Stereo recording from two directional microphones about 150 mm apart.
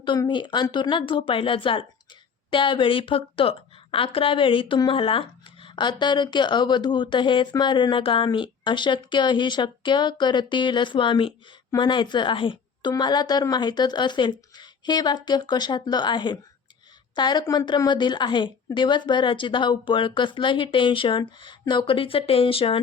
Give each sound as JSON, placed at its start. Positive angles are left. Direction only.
{"t": 0.0, "sound": "a woman's voice", "side_deg": 30}